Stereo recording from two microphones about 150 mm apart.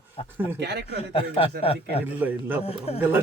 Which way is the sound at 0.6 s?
90° right.